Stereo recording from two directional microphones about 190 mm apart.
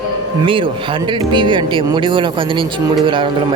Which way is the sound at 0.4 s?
25° right (ahead or behind).